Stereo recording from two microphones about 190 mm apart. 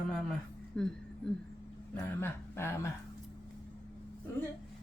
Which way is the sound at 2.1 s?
10° left (ahead or behind).